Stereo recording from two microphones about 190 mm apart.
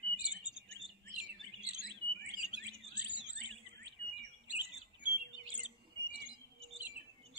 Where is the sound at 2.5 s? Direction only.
65° right (ahead or behind).